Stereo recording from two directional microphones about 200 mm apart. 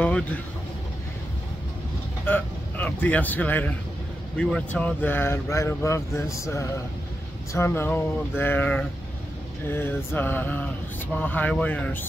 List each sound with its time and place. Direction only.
0.0 s vehicle: 5° left (ahead or behind)
2.2 s a man's voice: 10° left (ahead or behind)